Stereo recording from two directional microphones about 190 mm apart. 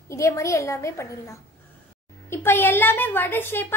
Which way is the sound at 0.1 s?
15° left (ahead or behind).